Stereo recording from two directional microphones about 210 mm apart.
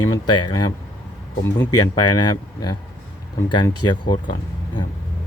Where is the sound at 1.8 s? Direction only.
20° left (ahead or behind).